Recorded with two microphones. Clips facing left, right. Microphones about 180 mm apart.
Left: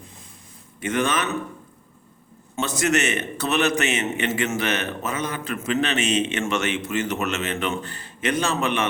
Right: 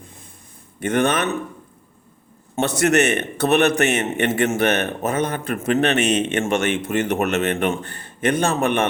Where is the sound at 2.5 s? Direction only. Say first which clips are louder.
Right 5 dB; 60° right (ahead or behind).